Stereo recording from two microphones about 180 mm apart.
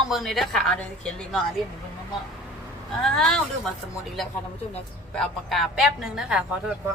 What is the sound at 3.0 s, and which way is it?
Speech, 5° left (ahead or behind).